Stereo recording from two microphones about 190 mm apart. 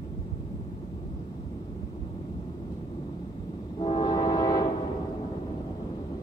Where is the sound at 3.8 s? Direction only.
25° left (ahead or behind).